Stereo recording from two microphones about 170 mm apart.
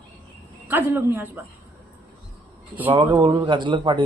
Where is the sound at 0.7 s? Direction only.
10° right (ahead or behind).